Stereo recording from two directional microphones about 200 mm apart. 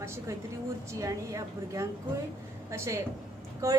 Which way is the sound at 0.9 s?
15° right (ahead or behind).